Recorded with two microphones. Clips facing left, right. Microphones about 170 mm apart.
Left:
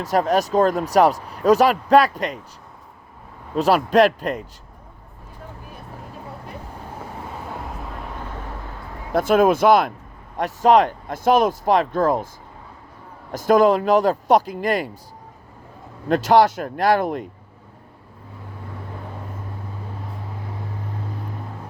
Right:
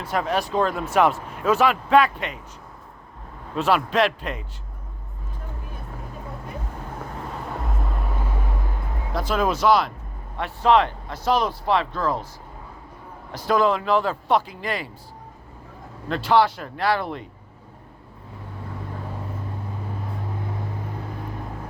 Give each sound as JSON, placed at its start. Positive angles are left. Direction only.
{"t": 0.0, "sound": "speech", "side_deg": 40}
{"t": 3.5, "sound": "speech", "side_deg": 40}
{"t": 7.6, "sound": "vehicle", "side_deg": 0}
{"t": 9.1, "sound": "speech", "side_deg": 50}
{"t": 13.3, "sound": "speech", "side_deg": 45}
{"t": 16.0, "sound": "speech", "side_deg": 45}